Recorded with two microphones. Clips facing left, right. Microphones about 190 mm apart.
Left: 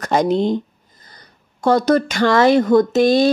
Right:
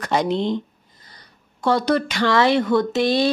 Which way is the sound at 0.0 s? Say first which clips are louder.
Left 4 dB; 45° left (ahead or behind).